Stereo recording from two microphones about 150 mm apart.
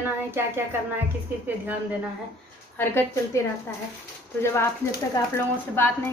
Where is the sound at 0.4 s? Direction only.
15° right (ahead or behind).